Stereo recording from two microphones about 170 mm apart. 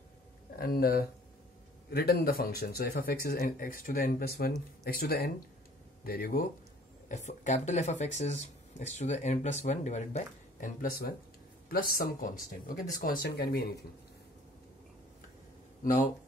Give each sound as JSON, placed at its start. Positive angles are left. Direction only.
{"t": 0.6, "sound": "speech", "side_deg": 65}
{"t": 7.1, "sound": "speech", "side_deg": 45}